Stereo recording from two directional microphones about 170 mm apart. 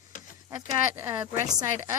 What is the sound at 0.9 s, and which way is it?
Speech, 15° right (ahead or behind).